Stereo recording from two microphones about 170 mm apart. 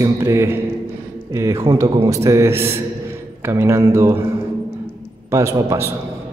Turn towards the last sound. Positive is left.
turn(degrees=-20)  # may be behind; listen again after turning